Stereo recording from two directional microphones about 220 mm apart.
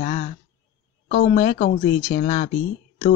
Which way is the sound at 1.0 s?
40° left (ahead or behind).